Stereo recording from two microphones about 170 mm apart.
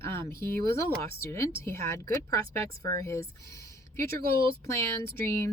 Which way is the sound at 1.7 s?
15° left (ahead or behind).